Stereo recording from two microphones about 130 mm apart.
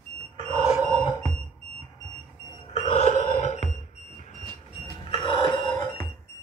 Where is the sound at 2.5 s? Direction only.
55° left (ahead or behind).